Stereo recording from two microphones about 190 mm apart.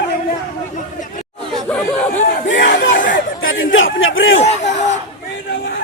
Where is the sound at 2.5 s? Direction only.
65° left (ahead or behind).